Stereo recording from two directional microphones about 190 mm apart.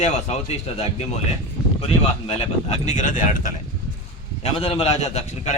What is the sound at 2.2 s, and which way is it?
A man's voice, 30° left (ahead or behind).